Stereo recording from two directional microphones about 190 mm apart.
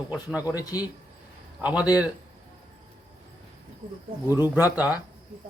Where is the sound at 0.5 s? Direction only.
20° left (ahead or behind).